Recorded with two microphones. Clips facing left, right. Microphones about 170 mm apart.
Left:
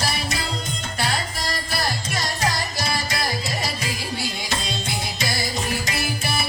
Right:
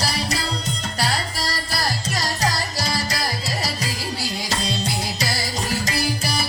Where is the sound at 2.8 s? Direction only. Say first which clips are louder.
Right 1 dB; 35° right (ahead or behind).